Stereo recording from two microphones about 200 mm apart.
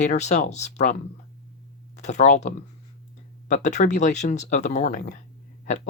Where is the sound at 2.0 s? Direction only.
35° left (ahead or behind).